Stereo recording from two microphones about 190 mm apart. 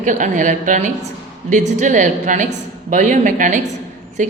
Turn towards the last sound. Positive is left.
turn(degrees=-40)  # may be behind; listen again after turning